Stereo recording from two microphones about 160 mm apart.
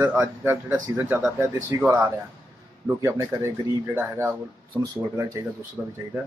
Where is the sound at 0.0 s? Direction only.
10° right (ahead or behind).